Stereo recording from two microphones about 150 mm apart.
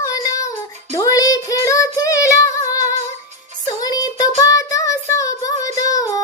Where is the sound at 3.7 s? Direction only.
25° left (ahead or behind).